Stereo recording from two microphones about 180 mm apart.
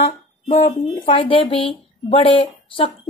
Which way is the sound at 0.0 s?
35° left (ahead or behind).